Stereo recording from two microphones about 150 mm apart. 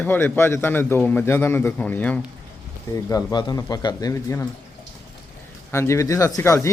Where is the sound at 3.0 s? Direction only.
25° left (ahead or behind).